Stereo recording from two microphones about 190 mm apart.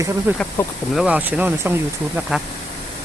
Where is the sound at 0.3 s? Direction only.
10° right (ahead or behind).